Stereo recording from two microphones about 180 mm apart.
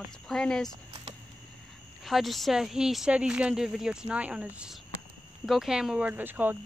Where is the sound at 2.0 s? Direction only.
Centre (ahead or behind).